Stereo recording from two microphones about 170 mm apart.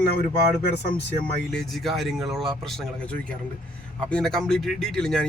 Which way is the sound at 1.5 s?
Centre (ahead or behind).